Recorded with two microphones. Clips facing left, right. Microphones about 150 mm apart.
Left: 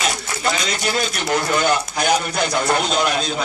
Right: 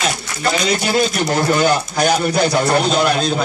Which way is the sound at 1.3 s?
35° right (ahead or behind).